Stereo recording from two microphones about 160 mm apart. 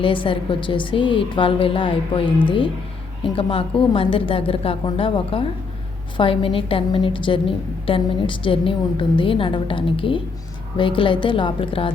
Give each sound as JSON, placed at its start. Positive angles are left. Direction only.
{"t": 0.0, "sound": "a woman's voice", "side_deg": 35}